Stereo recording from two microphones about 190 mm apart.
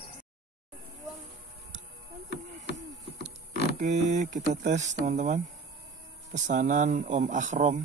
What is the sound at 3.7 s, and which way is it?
Speech, 40° right (ahead or behind).